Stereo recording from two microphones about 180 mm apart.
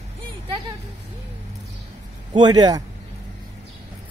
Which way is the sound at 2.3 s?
25° right (ahead or behind).